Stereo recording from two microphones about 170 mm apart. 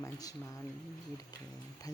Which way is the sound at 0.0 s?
20° left (ahead or behind).